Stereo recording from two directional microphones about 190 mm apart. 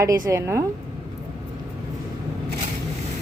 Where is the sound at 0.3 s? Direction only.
15° right (ahead or behind).